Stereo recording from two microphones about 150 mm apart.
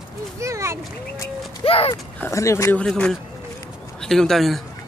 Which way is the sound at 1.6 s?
40° left (ahead or behind).